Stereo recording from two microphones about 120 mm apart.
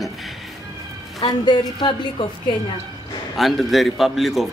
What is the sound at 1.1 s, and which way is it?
A woman's voice, 35° left (ahead or behind).